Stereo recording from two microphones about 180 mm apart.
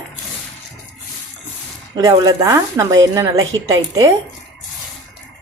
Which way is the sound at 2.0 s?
20° right (ahead or behind).